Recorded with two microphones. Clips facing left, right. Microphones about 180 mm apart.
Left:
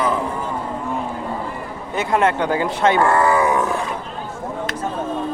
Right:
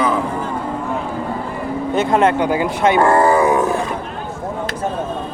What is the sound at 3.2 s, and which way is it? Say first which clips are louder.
Roaring cats: right 3 dB; 35° right (ahead or behind).